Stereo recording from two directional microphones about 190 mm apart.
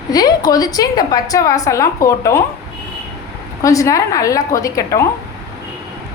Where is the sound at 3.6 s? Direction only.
15° left (ahead or behind).